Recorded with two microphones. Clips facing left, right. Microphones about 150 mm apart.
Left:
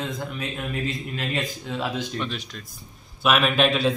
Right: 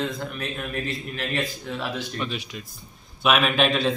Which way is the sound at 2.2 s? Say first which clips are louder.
Right 1 dB; 5° right (ahead or behind).